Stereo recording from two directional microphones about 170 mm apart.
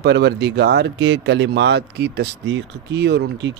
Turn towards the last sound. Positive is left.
turn(degrees=-85)